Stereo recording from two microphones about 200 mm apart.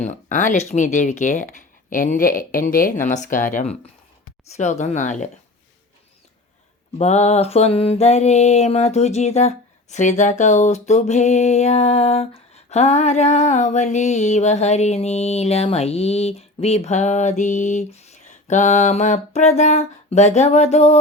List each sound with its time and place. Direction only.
0.0 s music: 35° left (ahead or behind)
7.0 s music: 35° left (ahead or behind)